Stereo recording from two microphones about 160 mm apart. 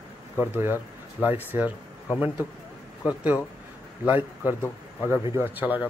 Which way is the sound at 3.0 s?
10° right (ahead or behind).